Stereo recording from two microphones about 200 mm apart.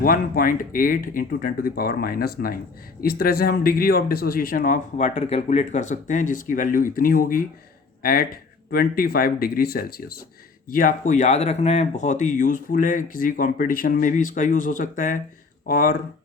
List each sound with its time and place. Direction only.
0.0 s speech: 45° left (ahead or behind)